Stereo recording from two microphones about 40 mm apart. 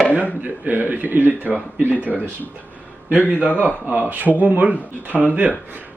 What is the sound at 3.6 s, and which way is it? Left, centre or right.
Speech, right.